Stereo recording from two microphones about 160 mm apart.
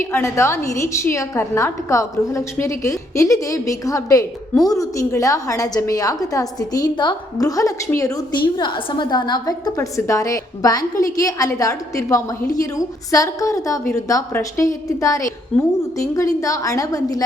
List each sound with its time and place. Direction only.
0.0 s a woman's voice: 15° left (ahead or behind)